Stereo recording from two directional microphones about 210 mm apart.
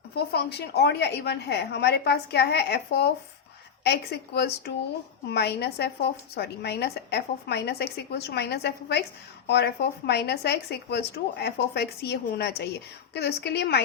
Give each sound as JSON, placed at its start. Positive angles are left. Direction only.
{"t": 0.2, "sound": "a woman's voice", "side_deg": 50}